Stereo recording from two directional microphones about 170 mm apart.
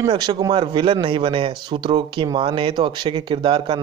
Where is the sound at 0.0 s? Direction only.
25° right (ahead or behind).